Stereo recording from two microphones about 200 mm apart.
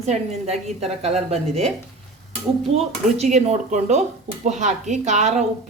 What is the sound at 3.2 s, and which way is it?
A woman's voice, 35° right (ahead or behind).